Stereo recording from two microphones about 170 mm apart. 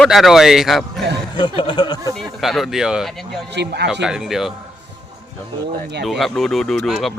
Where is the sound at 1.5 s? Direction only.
30° left (ahead or behind).